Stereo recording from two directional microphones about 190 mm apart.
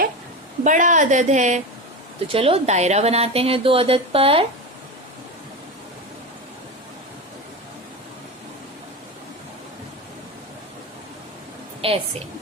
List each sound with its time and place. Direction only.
0.6 s a woman's voice: 40° right (ahead or behind)
11.8 s a woman's voice: 30° right (ahead or behind)